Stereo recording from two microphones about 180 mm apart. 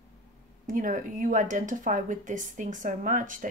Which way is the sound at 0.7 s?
45° right (ahead or behind).